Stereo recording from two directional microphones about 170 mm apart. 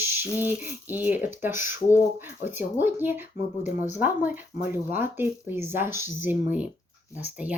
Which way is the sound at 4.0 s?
10° right (ahead or behind).